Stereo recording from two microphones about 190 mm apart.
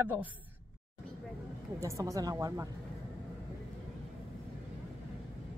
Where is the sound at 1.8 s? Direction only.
15° right (ahead or behind).